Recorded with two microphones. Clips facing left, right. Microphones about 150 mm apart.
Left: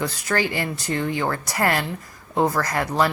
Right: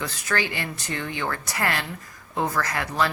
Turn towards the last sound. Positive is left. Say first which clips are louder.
# left 4 dB
turn(degrees=35)  # may be behind; listen again after turning